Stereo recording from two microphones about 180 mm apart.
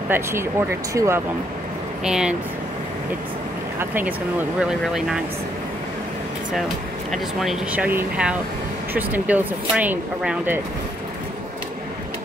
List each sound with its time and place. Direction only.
0.1 s speech: 15° right (ahead or behind)
2.0 s speech: 5° right (ahead or behind)
4.6 s speech: 5° right (ahead or behind)
7.1 s speech: centre (ahead or behind)